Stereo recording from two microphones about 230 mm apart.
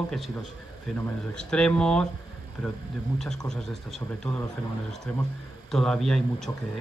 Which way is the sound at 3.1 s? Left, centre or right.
Centre.